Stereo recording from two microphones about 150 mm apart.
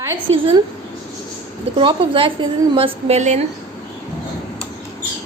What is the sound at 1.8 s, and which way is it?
A woman's voice, 35° right (ahead or behind).